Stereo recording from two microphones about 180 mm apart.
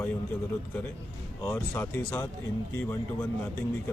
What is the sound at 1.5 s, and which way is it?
Speech, 10° left (ahead or behind).